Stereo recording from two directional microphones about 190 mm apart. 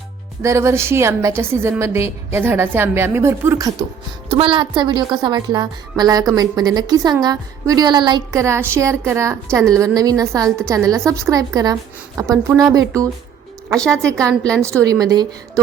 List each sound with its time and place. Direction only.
0.4 s a woman's voice: 15° right (ahead or behind)
4.3 s a woman's voice: 30° right (ahead or behind)
13.7 s a woman's voice: 5° left (ahead or behind)
14.0 s a woman's voice: 15° right (ahead or behind)